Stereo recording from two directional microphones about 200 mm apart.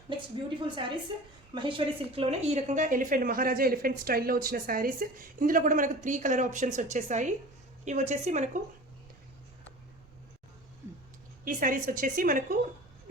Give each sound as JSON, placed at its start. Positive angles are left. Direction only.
{"t": 0.6, "sound": "a woman's voice", "side_deg": -25}
{"t": 11.4, "sound": "a woman's voice", "side_deg": -40}